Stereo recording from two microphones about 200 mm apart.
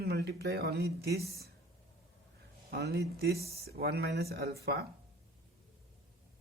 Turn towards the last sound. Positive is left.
turn(degrees=-50)  # may be behind; listen again after turning